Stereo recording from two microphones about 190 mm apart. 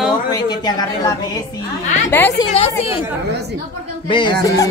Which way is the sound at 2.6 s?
30° left (ahead or behind).